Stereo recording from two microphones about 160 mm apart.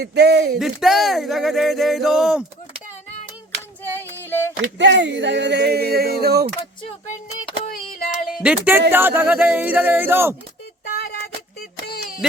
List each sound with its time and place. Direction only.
0.0 s speech: 90° right
0.6 s speech: centre (ahead or behind)
3.9 s music: 15° left (ahead or behind)
4.8 s speech: 90° right
7.6 s child singing: 55° left (ahead or behind)
8.4 s speech: 10° right (ahead or behind)
10.9 s a sound: 70° left (ahead or behind)